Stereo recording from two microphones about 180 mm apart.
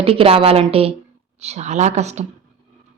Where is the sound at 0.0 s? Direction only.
30° right (ahead or behind).